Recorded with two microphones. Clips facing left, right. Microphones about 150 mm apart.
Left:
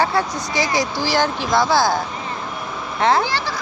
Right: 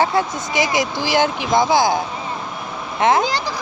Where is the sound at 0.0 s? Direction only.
20° right (ahead or behind).